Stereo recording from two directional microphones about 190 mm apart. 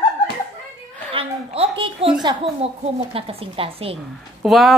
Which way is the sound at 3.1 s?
30° right (ahead or behind).